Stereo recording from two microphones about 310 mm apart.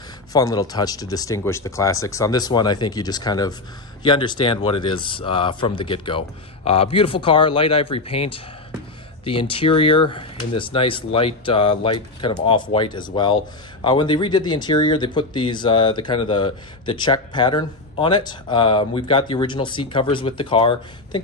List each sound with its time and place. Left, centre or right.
0.3 s speech: centre